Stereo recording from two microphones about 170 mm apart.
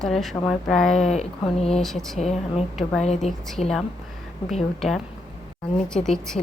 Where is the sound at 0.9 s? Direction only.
40° left (ahead or behind).